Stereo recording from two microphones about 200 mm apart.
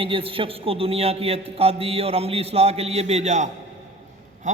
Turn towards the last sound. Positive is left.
turn(degrees=-35)  # may be behind; listen again after turning